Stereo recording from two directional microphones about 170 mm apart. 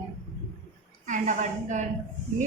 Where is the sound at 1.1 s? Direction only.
45° right (ahead or behind).